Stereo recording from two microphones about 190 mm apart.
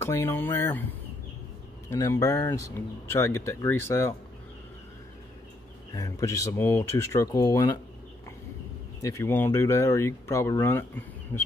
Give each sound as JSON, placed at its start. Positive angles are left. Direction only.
{"t": 0.0, "sound": "speech", "side_deg": 15}
{"t": 1.9, "sound": "speech", "side_deg": 15}
{"t": 5.9, "sound": "speech", "side_deg": 15}
{"t": 9.0, "sound": "speech", "side_deg": 15}